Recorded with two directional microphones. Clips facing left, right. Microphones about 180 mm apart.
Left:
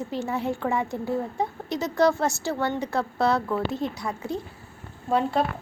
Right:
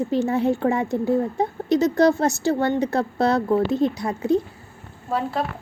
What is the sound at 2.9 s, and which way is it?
Speech, 45° right (ahead or behind).